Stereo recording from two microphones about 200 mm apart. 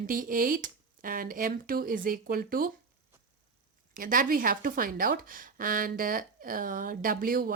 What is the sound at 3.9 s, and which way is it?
Speech, 45° right (ahead or behind).